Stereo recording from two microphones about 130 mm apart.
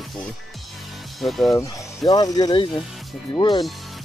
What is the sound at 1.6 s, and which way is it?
Speech, 30° left (ahead or behind).